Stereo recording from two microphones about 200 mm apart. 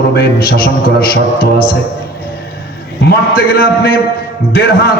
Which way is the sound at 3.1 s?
50° left (ahead or behind).